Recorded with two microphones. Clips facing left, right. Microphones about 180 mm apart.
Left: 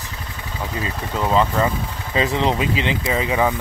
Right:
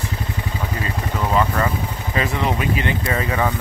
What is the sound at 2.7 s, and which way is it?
Speech, 90° left.